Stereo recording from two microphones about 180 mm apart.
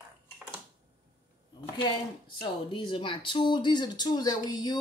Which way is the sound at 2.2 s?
25° left (ahead or behind).